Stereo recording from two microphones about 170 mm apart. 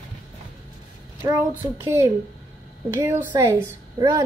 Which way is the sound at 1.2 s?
20° right (ahead or behind).